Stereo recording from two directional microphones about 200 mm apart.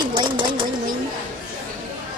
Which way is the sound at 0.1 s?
25° right (ahead or behind).